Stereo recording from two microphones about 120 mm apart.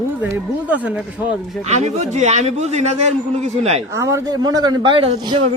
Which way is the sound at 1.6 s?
70° right (ahead or behind).